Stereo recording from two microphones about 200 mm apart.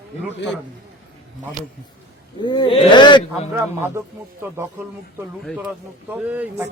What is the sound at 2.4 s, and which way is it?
Speech, 20° left (ahead or behind).